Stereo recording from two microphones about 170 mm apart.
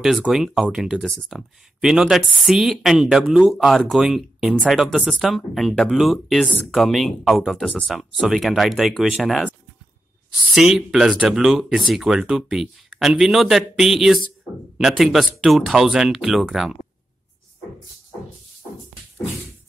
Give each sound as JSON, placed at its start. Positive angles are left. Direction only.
{"t": 0.0, "sound": "speech", "side_deg": 0}
{"t": 10.5, "sound": "speech", "side_deg": 0}